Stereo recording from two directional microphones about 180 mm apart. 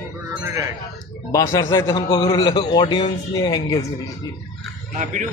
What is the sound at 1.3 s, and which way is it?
A man's voice, 20° left (ahead or behind).